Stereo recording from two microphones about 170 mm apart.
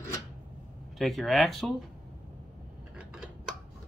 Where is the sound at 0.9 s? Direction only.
Centre (ahead or behind).